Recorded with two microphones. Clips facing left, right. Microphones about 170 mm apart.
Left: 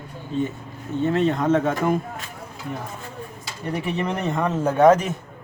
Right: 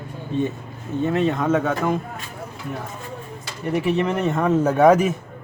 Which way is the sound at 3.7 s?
5° right (ahead or behind).